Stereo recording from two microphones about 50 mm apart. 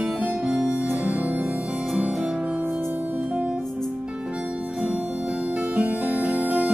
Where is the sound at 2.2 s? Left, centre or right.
Centre.